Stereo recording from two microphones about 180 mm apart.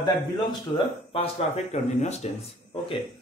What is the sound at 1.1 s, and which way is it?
Speech, 35° left (ahead or behind).